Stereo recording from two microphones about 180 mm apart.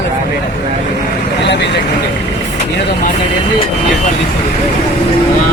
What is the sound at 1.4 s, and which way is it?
Speech, 75° left (ahead or behind).